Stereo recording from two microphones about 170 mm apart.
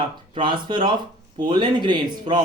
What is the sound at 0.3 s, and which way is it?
Speech, 30° right (ahead or behind).